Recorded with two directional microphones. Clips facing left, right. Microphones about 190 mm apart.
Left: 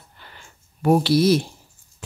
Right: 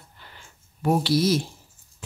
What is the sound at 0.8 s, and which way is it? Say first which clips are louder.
Speech: left 4 dB; 65° left (ahead or behind).